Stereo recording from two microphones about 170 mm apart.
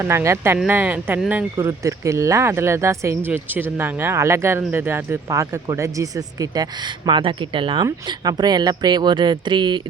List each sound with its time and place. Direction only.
0.0 s speech: 15° right (ahead or behind)